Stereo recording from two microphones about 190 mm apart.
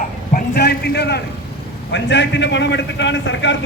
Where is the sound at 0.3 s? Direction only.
55° left (ahead or behind).